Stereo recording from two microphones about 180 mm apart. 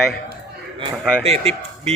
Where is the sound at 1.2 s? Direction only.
35° right (ahead or behind).